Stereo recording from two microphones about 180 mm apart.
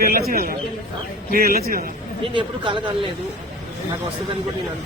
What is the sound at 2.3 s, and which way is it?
Speech, 25° right (ahead or behind).